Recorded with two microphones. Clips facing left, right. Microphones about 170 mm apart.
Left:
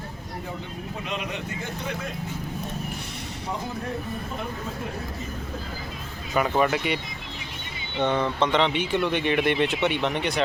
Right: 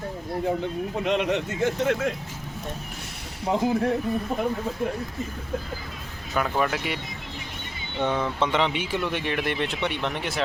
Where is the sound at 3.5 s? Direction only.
80° right.